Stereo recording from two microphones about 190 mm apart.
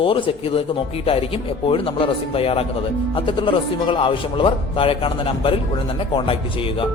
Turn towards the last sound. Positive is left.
turn(degrees=25)  # may be behind; listen again after turning